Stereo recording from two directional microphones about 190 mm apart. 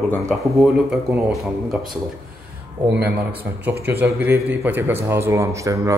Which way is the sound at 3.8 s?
10° right (ahead or behind).